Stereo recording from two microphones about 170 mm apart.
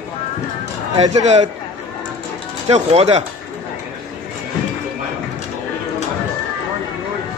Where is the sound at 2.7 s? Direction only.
40° right (ahead or behind).